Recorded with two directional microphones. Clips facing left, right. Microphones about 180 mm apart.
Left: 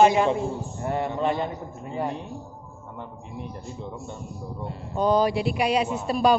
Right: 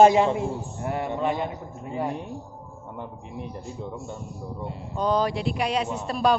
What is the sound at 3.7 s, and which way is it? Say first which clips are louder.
Speech: right 1 dB; centre (ahead or behind).